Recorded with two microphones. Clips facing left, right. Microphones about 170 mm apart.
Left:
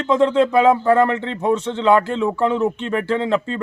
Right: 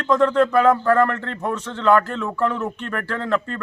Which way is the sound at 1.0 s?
25° left (ahead or behind).